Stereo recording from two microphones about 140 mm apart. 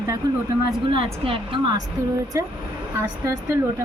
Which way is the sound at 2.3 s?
25° right (ahead or behind).